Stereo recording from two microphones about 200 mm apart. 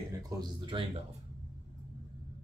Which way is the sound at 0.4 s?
25° right (ahead or behind).